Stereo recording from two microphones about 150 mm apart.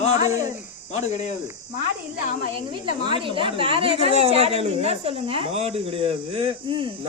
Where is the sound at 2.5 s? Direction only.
30° right (ahead or behind).